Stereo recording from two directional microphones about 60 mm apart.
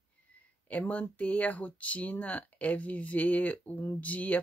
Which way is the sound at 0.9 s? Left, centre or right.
Left.